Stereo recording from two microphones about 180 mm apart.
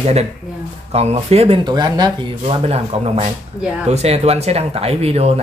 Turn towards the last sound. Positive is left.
turn(degrees=-35)  # may be behind; listen again after turning